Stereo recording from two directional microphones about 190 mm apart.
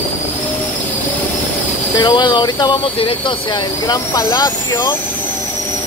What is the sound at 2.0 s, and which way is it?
Speech, 25° left (ahead or behind).